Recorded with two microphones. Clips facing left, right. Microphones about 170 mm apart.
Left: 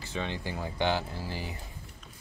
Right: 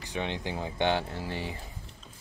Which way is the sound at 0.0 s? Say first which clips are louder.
Right 1 dB; 15° right (ahead or behind).